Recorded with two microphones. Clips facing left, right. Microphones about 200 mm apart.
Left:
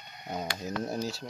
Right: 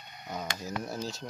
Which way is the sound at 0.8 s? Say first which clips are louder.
Left 6 dB; 20° left (ahead or behind).